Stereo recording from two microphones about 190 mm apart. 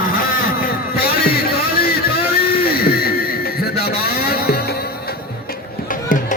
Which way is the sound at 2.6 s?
50° left (ahead or behind).